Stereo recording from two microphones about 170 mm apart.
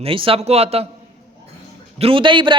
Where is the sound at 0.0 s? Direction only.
30° right (ahead or behind).